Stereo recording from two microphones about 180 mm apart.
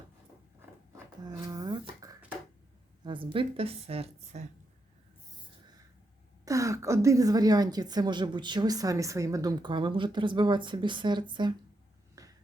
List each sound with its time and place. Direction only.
1.2 s a sound: 20° right (ahead or behind)
3.0 s a woman's voice: 25° right (ahead or behind)
6.4 s a woman's voice: 15° right (ahead or behind)
12.2 s finger snapping: 20° right (ahead or behind)